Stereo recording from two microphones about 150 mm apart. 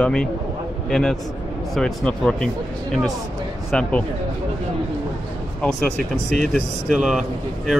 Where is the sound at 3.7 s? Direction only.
10° left (ahead or behind).